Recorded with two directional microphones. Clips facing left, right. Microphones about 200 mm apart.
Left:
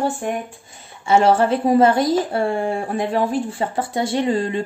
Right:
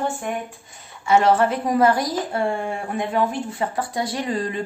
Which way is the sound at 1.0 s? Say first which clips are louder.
Left 2 dB; 30° left (ahead or behind).